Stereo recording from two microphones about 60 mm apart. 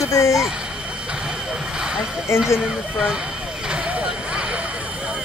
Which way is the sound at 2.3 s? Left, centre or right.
Left.